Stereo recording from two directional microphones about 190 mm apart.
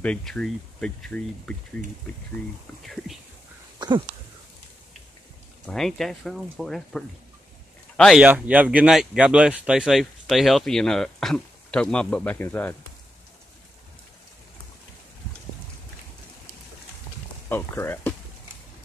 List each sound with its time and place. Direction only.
0.0 s speech: 5° left (ahead or behind)
2.8 s speech: centre (ahead or behind)
3.8 s a sound: 25° right (ahead or behind)
5.7 s speech: centre (ahead or behind)
17.5 s speech: 10° left (ahead or behind)